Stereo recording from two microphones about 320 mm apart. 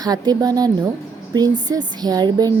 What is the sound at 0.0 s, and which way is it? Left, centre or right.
Speech, centre.